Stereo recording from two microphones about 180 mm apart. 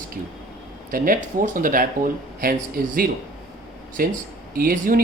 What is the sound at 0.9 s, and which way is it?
Speech, 50° right (ahead or behind).